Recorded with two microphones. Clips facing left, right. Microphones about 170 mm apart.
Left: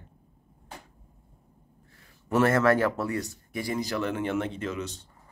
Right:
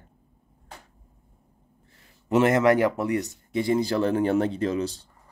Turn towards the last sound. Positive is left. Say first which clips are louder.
# right 7 dB
turn(degrees=-35)  # may be behind; listen again after turning